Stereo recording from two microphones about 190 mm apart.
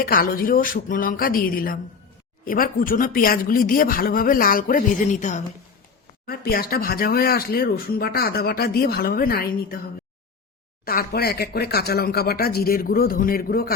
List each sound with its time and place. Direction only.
0.0 s speech: 50° left (ahead or behind)
6.2 s speech: 55° left (ahead or behind)
10.8 s speech: 55° left (ahead or behind)